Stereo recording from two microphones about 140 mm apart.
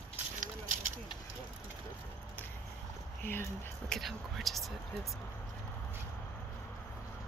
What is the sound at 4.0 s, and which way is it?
Speech, centre (ahead or behind).